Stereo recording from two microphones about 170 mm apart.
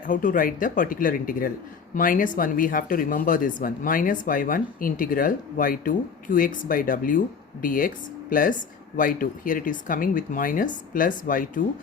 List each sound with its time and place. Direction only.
0.1 s speech: 50° left (ahead or behind)